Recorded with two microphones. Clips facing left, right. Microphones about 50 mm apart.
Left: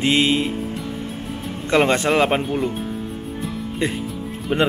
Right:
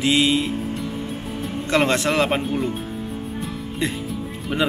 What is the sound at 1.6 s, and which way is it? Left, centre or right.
Speech, centre.